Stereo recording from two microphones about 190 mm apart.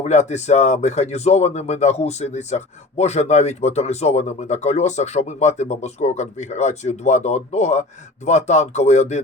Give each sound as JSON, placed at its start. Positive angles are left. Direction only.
{"t": 0.0, "sound": "speech", "side_deg": 35}